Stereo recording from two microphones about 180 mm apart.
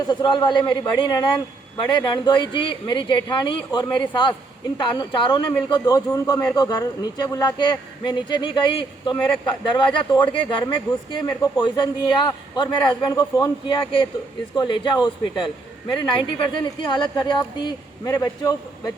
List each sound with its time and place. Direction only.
0.1 s speech: 25° left (ahead or behind)